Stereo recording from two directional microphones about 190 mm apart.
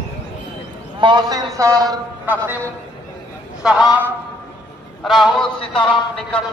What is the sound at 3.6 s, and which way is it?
Speech, 5° right (ahead or behind).